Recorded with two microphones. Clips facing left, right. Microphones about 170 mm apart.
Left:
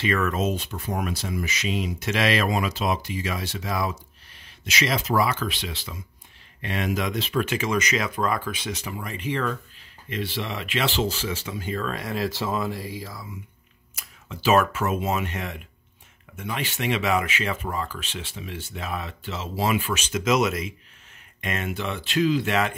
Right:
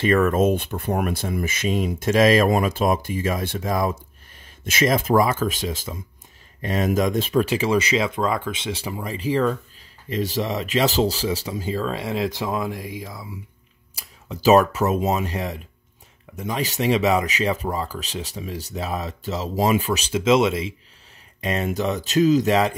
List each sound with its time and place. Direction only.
0.0 s speech: 50° right (ahead or behind)
7.4 s speech: 35° right (ahead or behind)
13.9 s speech: 40° right (ahead or behind)